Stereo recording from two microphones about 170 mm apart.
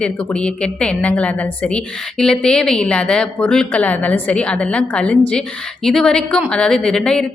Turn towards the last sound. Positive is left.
turn(degrees=5)  # may be behind; listen again after turning